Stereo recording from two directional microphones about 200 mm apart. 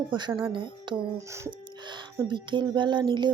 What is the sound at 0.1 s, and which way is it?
Music, 25° right (ahead or behind).